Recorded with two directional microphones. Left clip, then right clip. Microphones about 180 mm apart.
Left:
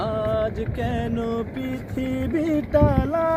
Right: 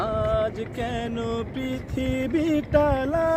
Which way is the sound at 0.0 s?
5° left (ahead or behind).